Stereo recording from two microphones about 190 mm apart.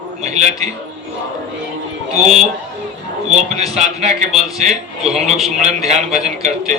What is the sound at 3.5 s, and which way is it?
A man's voice, 35° right (ahead or behind).